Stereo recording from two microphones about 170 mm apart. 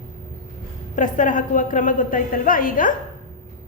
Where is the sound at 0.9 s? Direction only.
50° left (ahead or behind).